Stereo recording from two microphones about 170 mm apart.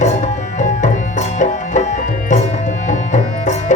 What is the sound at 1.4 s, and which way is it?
Music, 45° left (ahead or behind).